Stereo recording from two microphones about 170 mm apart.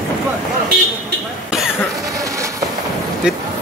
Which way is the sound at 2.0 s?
20° right (ahead or behind).